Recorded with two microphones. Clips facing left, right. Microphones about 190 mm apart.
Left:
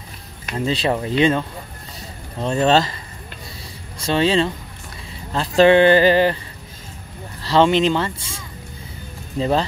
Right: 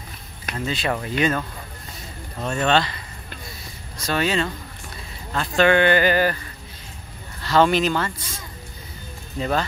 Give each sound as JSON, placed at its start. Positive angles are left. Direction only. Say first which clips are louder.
{"t": 0.6, "sound": "speech", "louder": "left 5 dB", "side_deg": 30}
{"t": 2.4, "sound": "speech", "louder": "left 4 dB", "side_deg": 30}
{"t": 4.0, "sound": "speech", "louder": "left 5 dB", "side_deg": 25}
{"t": 5.6, "sound": "speech", "louder": "left 5 dB", "side_deg": 30}
{"t": 7.4, "sound": "speech", "louder": "left 3 dB", "side_deg": 25}
{"t": 9.4, "sound": "speech", "louder": "left 4 dB", "side_deg": 25}